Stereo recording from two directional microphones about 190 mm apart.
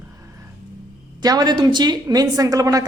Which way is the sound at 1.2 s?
20° right (ahead or behind).